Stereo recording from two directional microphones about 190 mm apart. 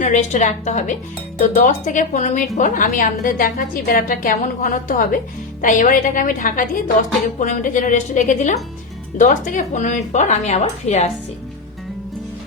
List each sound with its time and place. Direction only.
0.0 s a woman's voice: 40° left (ahead or behind)